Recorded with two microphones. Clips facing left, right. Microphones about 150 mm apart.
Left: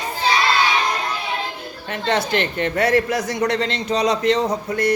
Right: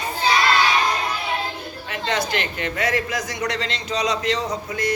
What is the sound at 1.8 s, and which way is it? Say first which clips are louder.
Speech: left 3 dB; 40° left (ahead or behind).